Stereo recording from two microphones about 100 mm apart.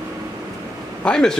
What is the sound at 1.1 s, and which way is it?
Speech, 5° left (ahead or behind).